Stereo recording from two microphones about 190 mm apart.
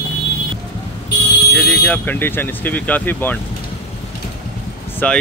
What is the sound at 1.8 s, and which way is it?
Speech, 10° left (ahead or behind).